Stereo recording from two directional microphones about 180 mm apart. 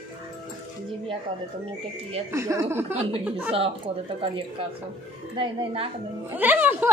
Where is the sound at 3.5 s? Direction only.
30° right (ahead or behind).